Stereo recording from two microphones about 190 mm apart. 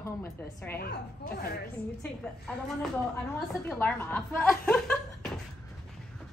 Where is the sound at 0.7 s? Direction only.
55° left (ahead or behind).